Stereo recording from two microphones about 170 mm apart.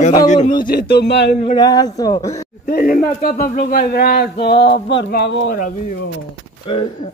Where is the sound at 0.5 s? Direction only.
60° left (ahead or behind); by 1.3 s 90° left.